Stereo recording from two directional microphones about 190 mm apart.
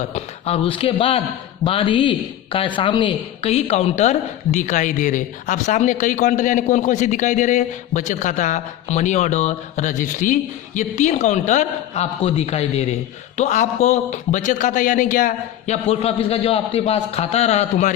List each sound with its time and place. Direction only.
0.1 s a man's voice: 35° left (ahead or behind)